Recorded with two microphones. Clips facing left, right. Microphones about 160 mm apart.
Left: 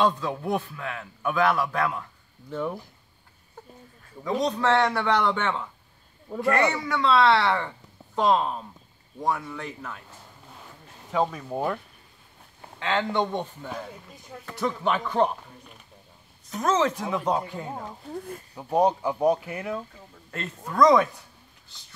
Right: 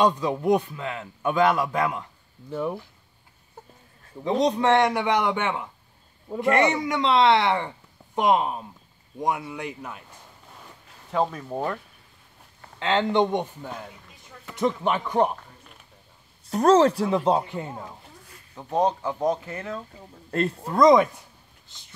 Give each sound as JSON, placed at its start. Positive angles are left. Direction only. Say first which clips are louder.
{"t": 0.0, "sound": "a man's voice", "louder": "right 3 dB", "side_deg": -15}
{"t": 2.5, "sound": "a man's voice", "louder": "right 2 dB", "side_deg": -10}
{"t": 4.2, "sound": "a man's voice", "louder": "right 3 dB", "side_deg": -20}
{"t": 11.1, "sound": "speech", "louder": "even", "side_deg": 0}
{"t": 12.7, "sound": "a man's voice", "louder": "right 4 dB", "side_deg": -25}
{"t": 16.4, "sound": "speech", "louder": "right 7 dB", "side_deg": -35}
{"t": 18.1, "sound": "speech", "louder": "left 16 dB", "side_deg": 55}
{"t": 18.5, "sound": "speech", "louder": "left 1 dB", "side_deg": 10}
{"t": 20.2, "sound": "speech", "louder": "right 10 dB", "side_deg": -35}
{"t": 20.7, "sound": "a man's voice", "louder": "right 2 dB", "side_deg": -20}